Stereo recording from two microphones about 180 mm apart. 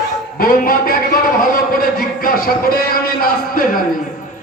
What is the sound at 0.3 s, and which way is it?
A man's voice, 50° left (ahead or behind).